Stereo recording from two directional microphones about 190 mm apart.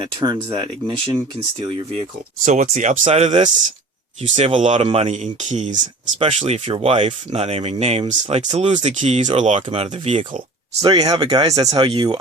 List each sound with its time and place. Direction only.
0.0 s speech: 25° right (ahead or behind)
10.8 s speech: 20° right (ahead or behind)